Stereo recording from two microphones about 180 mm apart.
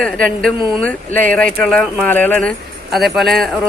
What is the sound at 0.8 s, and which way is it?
Speech, 5° left (ahead or behind).